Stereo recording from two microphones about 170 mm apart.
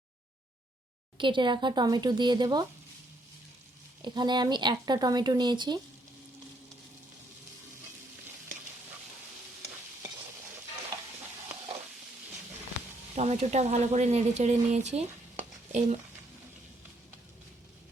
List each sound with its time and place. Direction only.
1.2 s speech: 30° right (ahead or behind)
4.0 s speech: 25° right (ahead or behind)
13.1 s speech: 40° right (ahead or behind)